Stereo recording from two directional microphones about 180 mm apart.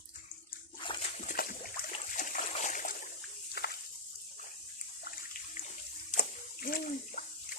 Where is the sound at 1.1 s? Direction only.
50° left (ahead or behind).